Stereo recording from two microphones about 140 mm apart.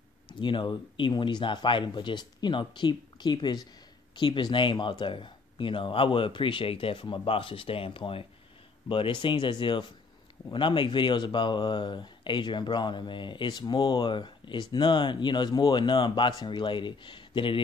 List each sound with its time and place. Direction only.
0.3 s speech: 35° left (ahead or behind)